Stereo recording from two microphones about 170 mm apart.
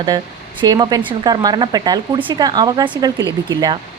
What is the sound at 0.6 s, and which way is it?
A woman's voice, 25° right (ahead or behind).